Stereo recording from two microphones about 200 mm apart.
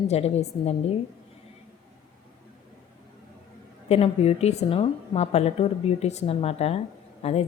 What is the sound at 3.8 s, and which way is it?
A woman's voice, 30° left (ahead or behind).